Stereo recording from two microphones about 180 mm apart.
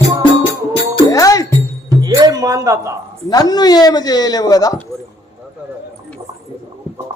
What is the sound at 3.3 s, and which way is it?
Speech, 20° left (ahead or behind).